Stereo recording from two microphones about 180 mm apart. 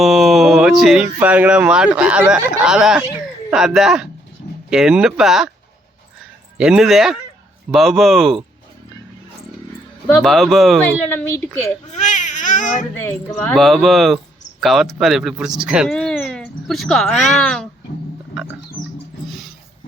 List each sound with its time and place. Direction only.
0.0 s mantra: centre (ahead or behind)
1.2 s speech: 10° right (ahead or behind)
6.6 s speech: 5° right (ahead or behind)
10.2 s speech: centre (ahead or behind)
11.1 s speech: 10° left (ahead or behind)
11.9 s speech: 40° left (ahead or behind)
12.9 s speech: 10° left (ahead or behind)
13.6 s speech: centre (ahead or behind)